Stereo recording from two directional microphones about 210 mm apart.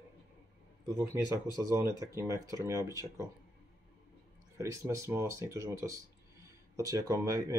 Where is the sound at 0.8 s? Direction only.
10° right (ahead or behind).